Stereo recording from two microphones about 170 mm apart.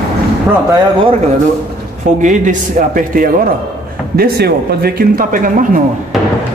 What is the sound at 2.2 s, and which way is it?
A man's voice, 50° right (ahead or behind).